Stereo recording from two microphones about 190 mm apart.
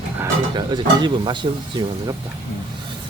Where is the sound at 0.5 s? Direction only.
25° right (ahead or behind).